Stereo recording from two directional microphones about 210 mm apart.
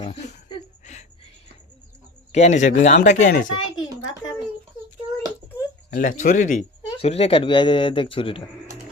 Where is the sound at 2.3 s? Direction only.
30° left (ahead or behind).